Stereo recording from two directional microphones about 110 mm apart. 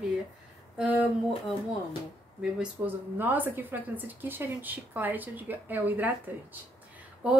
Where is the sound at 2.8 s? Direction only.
15° right (ahead or behind).